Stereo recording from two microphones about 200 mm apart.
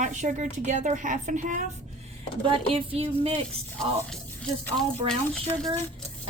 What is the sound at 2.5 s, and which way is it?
Speech, 30° right (ahead or behind).